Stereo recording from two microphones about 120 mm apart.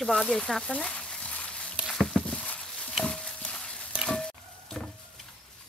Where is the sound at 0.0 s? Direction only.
Centre (ahead or behind).